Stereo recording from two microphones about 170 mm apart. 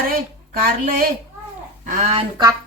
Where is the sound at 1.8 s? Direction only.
45° right (ahead or behind).